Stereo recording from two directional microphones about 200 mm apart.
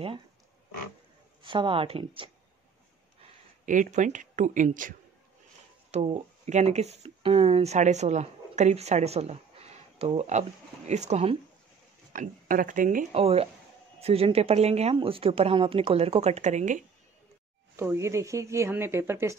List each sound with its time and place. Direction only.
1.4 s a woman's voice: 25° right (ahead or behind)
3.2 s speech: 40° right (ahead or behind)
12.1 s speech: 45° right (ahead or behind)
13.1 s a woman's voice: 30° right (ahead or behind)
17.7 s speech: 15° right (ahead or behind)